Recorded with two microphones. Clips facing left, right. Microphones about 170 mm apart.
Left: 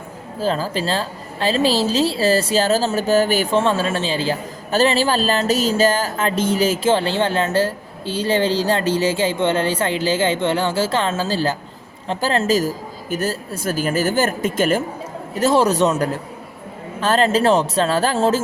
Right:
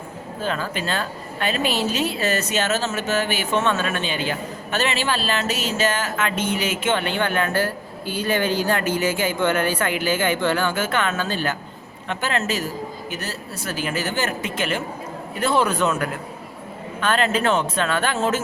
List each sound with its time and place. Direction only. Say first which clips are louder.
0.3 s a woman's voice: left 5 dB; 35° left (ahead or behind)
13.1 s a woman's voice: left 8 dB; 45° left (ahead or behind)